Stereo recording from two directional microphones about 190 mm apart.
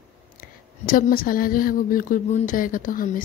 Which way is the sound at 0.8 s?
50° left (ahead or behind).